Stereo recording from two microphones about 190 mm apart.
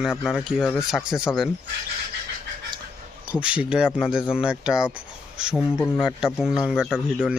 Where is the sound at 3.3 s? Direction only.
5° right (ahead or behind).